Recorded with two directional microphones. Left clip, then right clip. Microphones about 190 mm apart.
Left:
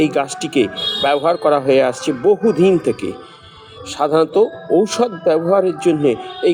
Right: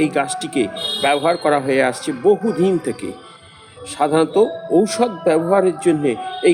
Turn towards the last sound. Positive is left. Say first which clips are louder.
# left 3 dB
turn(degrees=5)  # may be behind; listen again after turning